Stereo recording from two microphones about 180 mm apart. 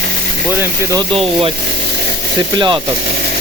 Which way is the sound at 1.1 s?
30° right (ahead or behind).